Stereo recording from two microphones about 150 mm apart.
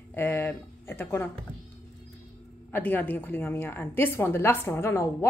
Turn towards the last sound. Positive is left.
turn(degrees=15)  # may be behind; listen again after turning